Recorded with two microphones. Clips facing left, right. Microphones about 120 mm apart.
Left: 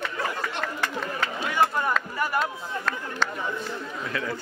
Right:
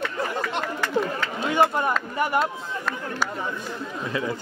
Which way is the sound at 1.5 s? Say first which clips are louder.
Right 3 dB; 20° right (ahead or behind).